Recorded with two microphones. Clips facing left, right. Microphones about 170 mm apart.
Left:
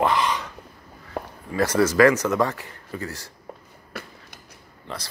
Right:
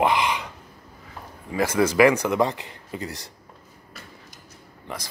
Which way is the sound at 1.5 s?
10° right (ahead or behind).